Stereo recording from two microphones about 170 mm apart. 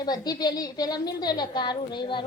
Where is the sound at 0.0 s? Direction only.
25° left (ahead or behind).